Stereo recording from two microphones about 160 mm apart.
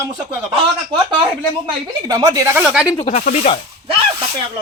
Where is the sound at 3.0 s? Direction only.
50° left (ahead or behind).